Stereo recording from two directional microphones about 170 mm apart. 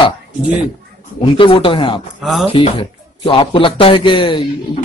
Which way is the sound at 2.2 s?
Centre (ahead or behind).